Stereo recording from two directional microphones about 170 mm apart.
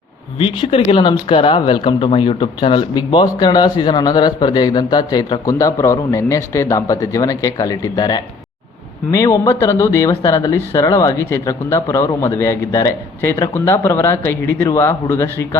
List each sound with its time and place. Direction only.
0.3 s speech: 30° left (ahead or behind)